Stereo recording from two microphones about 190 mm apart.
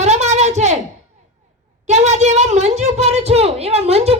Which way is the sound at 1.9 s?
35° right (ahead or behind).